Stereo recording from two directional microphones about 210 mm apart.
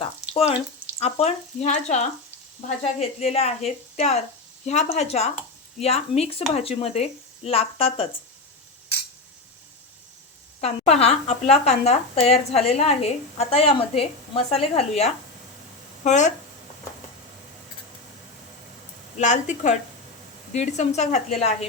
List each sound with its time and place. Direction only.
0.9 s speech: 30° left (ahead or behind)
10.6 s speech: 30° left (ahead or behind)
19.2 s speech: 35° left (ahead or behind)